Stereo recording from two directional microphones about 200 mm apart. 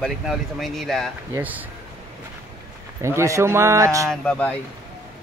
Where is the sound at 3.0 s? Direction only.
15° right (ahead or behind).